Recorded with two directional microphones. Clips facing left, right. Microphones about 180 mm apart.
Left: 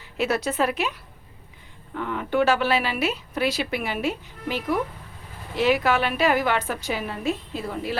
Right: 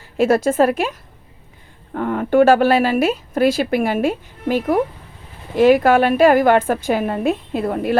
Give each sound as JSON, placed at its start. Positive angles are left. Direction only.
{"t": 0.0, "sound": "a woman's voice", "side_deg": -50}